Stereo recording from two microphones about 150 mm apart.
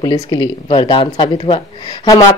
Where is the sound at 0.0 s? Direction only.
30° left (ahead or behind).